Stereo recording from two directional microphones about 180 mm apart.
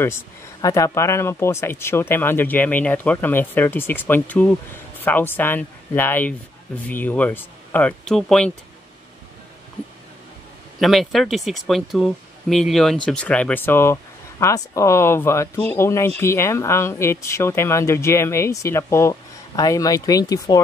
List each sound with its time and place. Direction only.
0.0 s speech: 15° left (ahead or behind)
10.8 s speech: centre (ahead or behind); by 20.6 s 20° left (ahead or behind)